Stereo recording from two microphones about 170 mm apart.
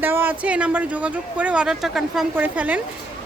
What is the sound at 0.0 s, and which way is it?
A woman's voice, 10° right (ahead or behind).